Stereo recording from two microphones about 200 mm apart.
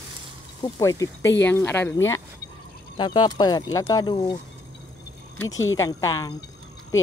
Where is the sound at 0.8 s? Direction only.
15° left (ahead or behind).